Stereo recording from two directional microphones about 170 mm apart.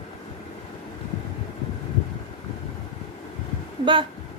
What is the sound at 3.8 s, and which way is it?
Speech, 30° right (ahead or behind).